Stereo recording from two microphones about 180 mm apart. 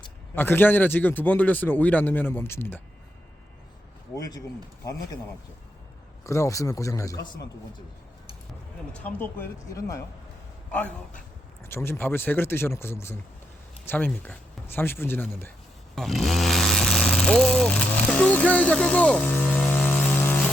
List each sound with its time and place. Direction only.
0.3 s speech: 10° left (ahead or behind)
4.1 s speech: 20° left (ahead or behind)
6.2 s speech: 15° left (ahead or behind)
9.0 s a man's voice: 10° left (ahead or behind)